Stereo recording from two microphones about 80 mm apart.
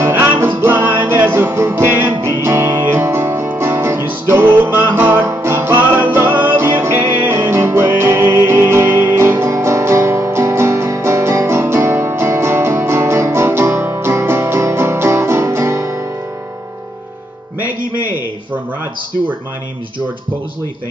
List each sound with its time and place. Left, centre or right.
0.0 s music: right